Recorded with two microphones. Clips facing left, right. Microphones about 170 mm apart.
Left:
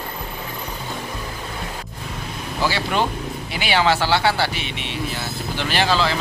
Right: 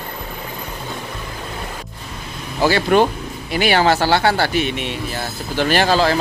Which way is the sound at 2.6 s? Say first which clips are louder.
Right 7 dB; 50° right (ahead or behind).